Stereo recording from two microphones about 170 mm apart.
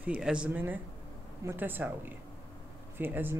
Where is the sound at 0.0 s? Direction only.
5° right (ahead or behind).